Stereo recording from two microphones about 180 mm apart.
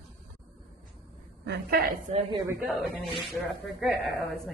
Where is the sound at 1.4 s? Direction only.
65° right (ahead or behind).